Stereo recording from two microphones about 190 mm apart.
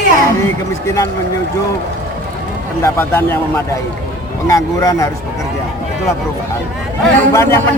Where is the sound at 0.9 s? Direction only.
15° left (ahead or behind).